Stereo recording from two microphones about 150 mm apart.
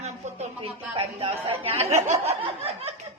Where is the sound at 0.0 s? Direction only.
50° right (ahead or behind).